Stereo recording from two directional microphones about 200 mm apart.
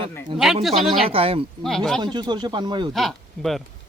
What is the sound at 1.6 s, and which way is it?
Speech, centre (ahead or behind).